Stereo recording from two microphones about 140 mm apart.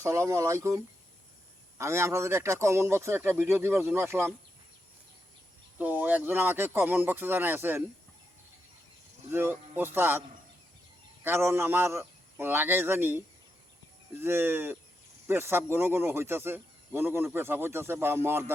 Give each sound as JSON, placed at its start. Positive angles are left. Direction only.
{"t": 0.0, "sound": "speech", "side_deg": -20}
{"t": 1.8, "sound": "speech", "side_deg": -20}
{"t": 5.7, "sound": "speech", "side_deg": -10}
{"t": 9.3, "sound": "speech", "side_deg": -15}